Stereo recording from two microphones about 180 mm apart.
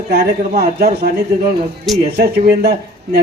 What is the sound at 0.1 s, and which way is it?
Speech, 60° right (ahead or behind).